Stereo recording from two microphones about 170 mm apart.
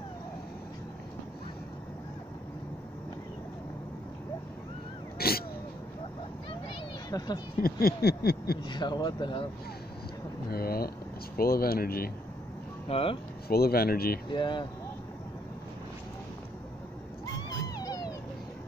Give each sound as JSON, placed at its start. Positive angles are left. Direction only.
{"t": 5.2, "sound": "sneeze", "side_deg": 65}
{"t": 7.1, "sound": "speech", "side_deg": 20}
{"t": 7.6, "sound": "a sound", "side_deg": 65}
{"t": 8.6, "sound": "speech", "side_deg": 25}
{"t": 10.5, "sound": "speech", "side_deg": 65}
{"t": 12.8, "sound": "speech", "side_deg": 35}
{"t": 13.5, "sound": "speech", "side_deg": 65}
{"t": 14.3, "sound": "speech", "side_deg": 25}
{"t": 17.7, "sound": "a sound", "side_deg": 20}